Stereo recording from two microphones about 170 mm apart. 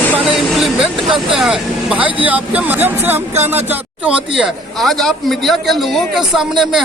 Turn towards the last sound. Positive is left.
turn(degrees=0)  # may be behind; listen again after turning